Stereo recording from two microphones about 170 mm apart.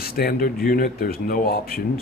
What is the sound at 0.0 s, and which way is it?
Speech, 60° left (ahead or behind).